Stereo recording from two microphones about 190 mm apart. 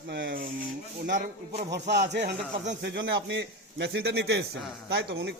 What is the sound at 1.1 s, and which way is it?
Speech, 50° right (ahead or behind).